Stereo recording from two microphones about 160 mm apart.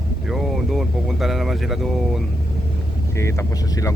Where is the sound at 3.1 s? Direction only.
20° left (ahead or behind).